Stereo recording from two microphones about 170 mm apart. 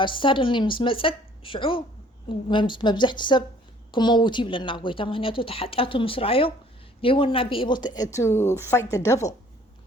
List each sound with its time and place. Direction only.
0.0 s speech: 30° left (ahead or behind)